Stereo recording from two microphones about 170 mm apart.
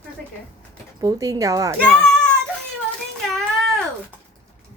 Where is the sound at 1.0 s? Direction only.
20° right (ahead or behind).